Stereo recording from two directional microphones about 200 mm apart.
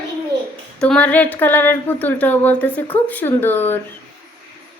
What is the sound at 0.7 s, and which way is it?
Speech, 5° left (ahead or behind).